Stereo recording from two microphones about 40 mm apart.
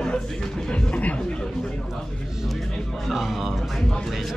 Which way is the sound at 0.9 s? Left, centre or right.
Left.